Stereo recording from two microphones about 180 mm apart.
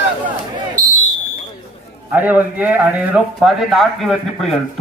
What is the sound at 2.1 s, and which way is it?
Speech, 10° right (ahead or behind).